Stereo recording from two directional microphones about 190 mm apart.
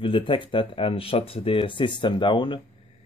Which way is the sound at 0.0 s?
25° left (ahead or behind).